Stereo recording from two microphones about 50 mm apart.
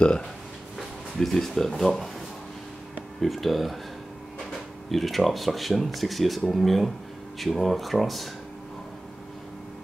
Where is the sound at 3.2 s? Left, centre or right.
Centre.